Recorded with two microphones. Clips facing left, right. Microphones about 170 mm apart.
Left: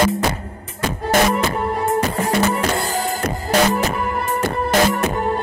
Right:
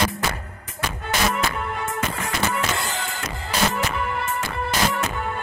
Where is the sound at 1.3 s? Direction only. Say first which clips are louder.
Left 6 dB; 35° left (ahead or behind).